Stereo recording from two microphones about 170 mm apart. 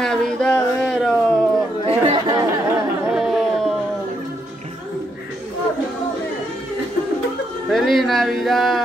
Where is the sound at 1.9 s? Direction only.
30° right (ahead or behind).